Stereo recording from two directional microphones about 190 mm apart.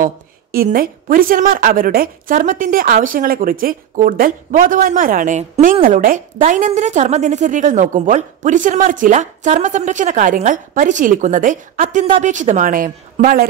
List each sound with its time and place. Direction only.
0.0 s a woman's voice: 45° right (ahead or behind)